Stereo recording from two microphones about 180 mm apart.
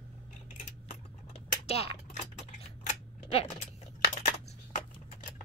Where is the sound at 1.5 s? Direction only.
35° left (ahead or behind).